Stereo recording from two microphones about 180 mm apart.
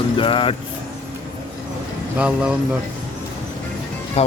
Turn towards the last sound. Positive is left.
turn(degrees=35)  # may be behind; listen again after turning